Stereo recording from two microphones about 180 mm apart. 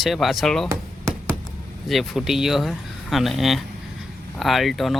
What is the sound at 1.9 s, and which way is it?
Speech, centre (ahead or behind).